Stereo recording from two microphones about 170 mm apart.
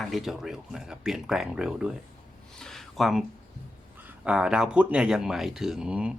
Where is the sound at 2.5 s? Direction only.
5° left (ahead or behind).